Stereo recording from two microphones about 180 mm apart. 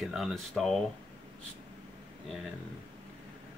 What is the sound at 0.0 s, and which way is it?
Speech, centre (ahead or behind).